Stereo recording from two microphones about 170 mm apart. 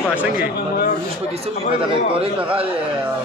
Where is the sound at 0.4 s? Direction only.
60° left (ahead or behind).